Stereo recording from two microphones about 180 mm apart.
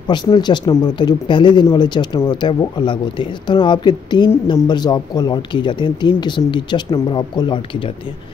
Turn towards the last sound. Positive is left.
turn(degrees=25)  # may be behind; listen again after turning